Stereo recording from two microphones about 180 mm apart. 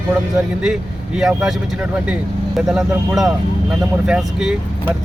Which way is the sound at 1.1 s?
Centre (ahead or behind).